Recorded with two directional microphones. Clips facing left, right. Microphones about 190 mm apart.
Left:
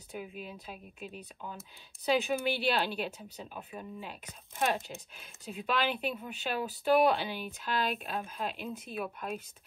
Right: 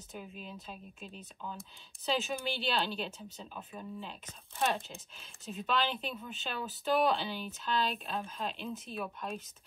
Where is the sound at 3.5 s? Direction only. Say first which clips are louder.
Even; 10° left (ahead or behind).